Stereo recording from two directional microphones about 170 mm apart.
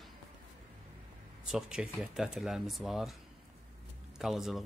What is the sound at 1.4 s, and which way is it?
Speech, 5° right (ahead or behind).